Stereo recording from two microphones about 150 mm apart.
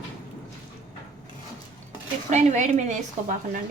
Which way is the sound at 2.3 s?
50° right (ahead or behind).